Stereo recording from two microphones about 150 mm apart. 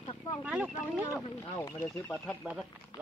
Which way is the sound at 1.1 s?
20° left (ahead or behind).